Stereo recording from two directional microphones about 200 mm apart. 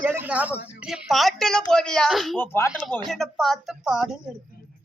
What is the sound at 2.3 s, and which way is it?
A man's voice, 10° left (ahead or behind).